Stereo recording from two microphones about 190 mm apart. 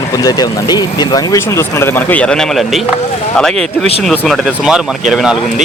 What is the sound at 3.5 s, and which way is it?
Speech, 35° right (ahead or behind).